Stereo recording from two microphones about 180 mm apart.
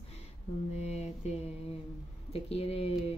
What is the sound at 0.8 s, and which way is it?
Mantra, 35° left (ahead or behind).